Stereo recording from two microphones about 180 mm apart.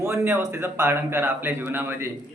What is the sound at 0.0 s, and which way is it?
Speech, 15° right (ahead or behind).